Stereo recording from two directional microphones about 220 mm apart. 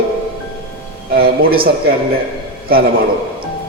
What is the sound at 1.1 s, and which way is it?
Speech, 45° right (ahead or behind).